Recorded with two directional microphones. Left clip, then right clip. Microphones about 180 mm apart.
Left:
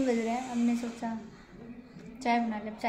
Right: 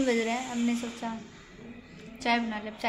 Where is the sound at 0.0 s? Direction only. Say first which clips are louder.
Right 2 dB; centre (ahead or behind).